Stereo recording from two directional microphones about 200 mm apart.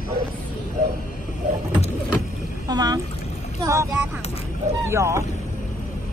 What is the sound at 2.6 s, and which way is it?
Speech, 20° right (ahead or behind).